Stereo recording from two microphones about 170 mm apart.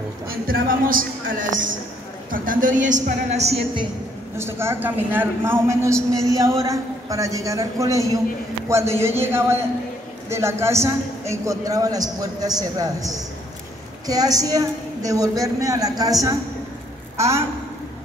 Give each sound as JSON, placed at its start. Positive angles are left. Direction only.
{"t": 0.3, "sound": "a man's voice", "side_deg": -60}
{"t": 4.4, "sound": "a woman's voice", "side_deg": -15}